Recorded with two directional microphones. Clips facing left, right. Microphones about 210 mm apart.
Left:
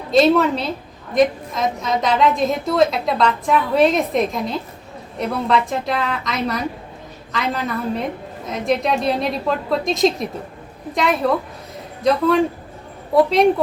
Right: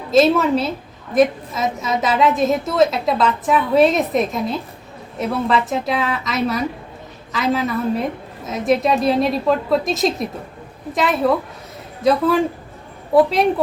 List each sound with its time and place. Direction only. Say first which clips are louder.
0.1 s a woman's voice: even; centre (ahead or behind)
13.1 s a woman's voice: even; centre (ahead or behind)